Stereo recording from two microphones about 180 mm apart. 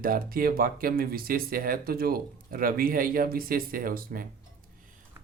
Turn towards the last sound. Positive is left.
turn(degrees=-55)  # may be behind; listen again after turning